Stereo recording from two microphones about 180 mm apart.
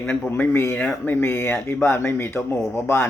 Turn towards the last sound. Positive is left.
turn(degrees=10)  # may be behind; listen again after turning